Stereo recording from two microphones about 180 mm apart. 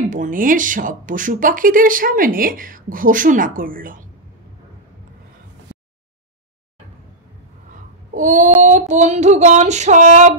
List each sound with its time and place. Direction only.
0.1 s speech: 50° right (ahead or behind)
8.1 s child singing: 45° right (ahead or behind)
8.6 s female singing: 40° right (ahead or behind)